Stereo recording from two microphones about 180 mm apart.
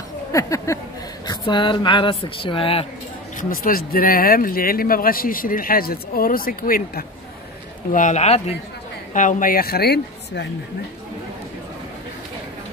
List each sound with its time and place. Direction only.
0.3 s speech: 15° left (ahead or behind)
3.3 s speech: 50° left (ahead or behind); by 10.5 s 65° left (ahead or behind)